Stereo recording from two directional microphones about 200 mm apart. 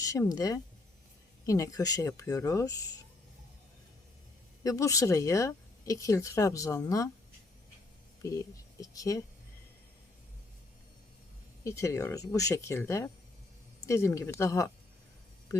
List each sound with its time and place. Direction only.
0.0 s speech: 15° left (ahead or behind)
4.6 s speech: 15° left (ahead or behind)
8.8 s speech: 15° left (ahead or behind)
11.6 s speech: 15° left (ahead or behind)